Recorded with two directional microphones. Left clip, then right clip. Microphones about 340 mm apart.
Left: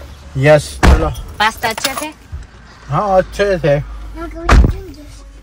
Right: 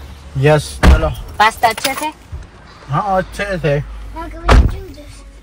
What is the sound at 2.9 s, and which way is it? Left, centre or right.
Speech, left.